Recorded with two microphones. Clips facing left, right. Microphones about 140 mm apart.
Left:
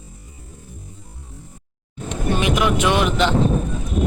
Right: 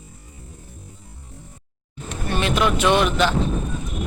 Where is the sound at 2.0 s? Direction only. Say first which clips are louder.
Left 3 dB; 15° left (ahead or behind).